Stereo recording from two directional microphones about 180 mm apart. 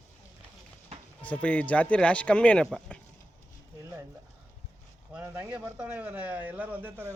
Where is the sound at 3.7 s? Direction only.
15° right (ahead or behind).